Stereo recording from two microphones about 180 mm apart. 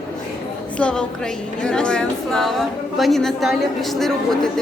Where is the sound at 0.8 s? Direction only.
5° left (ahead or behind).